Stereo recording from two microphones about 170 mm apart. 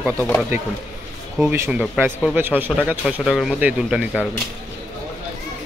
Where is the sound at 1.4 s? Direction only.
15° right (ahead or behind).